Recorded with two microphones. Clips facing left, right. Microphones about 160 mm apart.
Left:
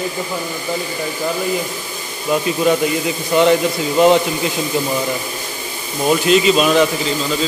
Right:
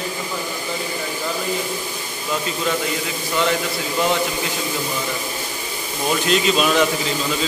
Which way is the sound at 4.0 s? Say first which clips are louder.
Left 9 dB; 20° left (ahead or behind).